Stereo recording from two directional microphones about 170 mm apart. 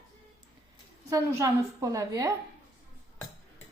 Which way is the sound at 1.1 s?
20° right (ahead or behind).